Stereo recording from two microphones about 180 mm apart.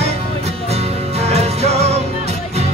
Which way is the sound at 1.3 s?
35° right (ahead or behind).